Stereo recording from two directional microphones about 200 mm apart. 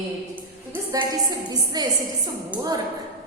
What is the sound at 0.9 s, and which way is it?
Speech, 20° right (ahead or behind).